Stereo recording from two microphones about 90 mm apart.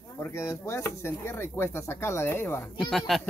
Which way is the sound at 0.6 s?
35° left (ahead or behind).